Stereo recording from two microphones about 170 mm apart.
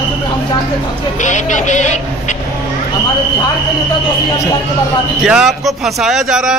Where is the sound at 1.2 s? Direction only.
45° left (ahead or behind).